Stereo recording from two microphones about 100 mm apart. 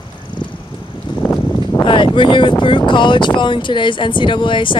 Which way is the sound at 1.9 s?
55° left (ahead or behind).